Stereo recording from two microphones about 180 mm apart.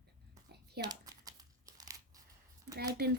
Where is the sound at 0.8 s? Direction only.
20° right (ahead or behind).